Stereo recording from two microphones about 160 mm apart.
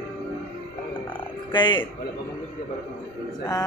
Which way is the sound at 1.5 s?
30° left (ahead or behind).